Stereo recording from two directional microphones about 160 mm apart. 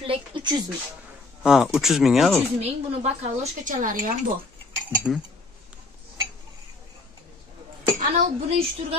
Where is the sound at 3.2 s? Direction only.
55° right (ahead or behind).